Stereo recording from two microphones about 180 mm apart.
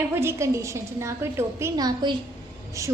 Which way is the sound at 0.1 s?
15° right (ahead or behind).